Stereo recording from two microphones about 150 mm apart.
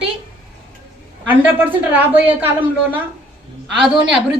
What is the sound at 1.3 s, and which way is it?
A woman's voice, 10° right (ahead or behind).